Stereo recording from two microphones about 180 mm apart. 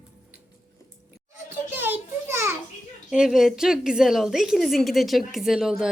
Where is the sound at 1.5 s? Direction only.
10° right (ahead or behind).